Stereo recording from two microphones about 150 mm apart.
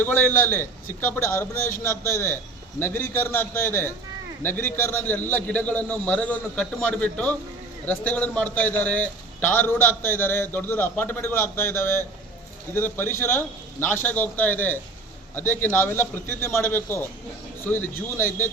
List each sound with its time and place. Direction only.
0.0 s a man's voice: 15° left (ahead or behind)